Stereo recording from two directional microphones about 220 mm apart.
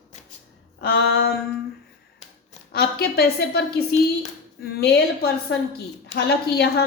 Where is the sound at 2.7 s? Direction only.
45° left (ahead or behind).